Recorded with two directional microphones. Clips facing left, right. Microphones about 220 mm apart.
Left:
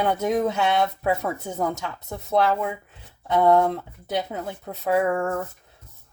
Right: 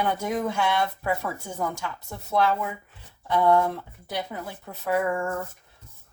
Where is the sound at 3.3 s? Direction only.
20° left (ahead or behind).